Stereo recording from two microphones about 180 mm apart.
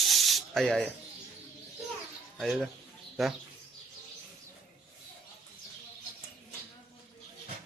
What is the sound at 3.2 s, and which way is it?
Speech, centre (ahead or behind).